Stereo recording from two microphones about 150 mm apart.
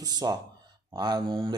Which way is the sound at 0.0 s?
25° right (ahead or behind).